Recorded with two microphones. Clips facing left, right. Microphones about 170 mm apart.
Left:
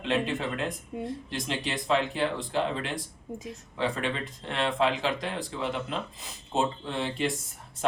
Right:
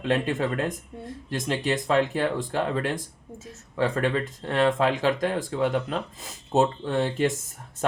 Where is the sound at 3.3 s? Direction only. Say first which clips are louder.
Left 4 dB; 15° left (ahead or behind).